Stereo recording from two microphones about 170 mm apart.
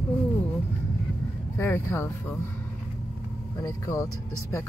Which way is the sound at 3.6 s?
20° left (ahead or behind).